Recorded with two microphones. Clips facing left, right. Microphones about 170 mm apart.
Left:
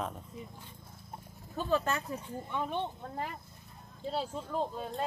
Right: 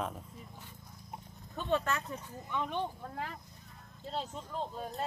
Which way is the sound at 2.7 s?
20° left (ahead or behind).